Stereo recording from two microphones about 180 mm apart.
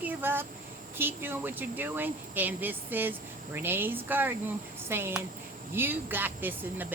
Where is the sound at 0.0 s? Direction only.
10° right (ahead or behind).